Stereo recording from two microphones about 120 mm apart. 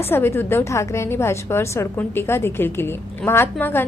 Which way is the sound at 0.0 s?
20° left (ahead or behind).